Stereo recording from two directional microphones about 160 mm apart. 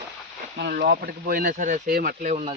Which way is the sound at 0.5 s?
90° right.